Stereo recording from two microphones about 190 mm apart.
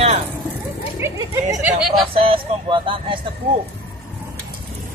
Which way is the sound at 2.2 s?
30° right (ahead or behind).